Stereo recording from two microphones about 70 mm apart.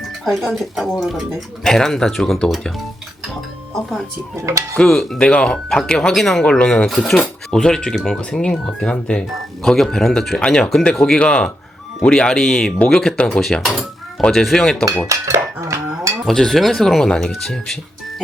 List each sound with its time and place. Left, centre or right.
0.3 s speech: centre
3.8 s speech: centre
4.4 s speech: right
4.8 s speech: centre
13.4 s speech: centre
15.0 s dishes: right
16.2 s speech: centre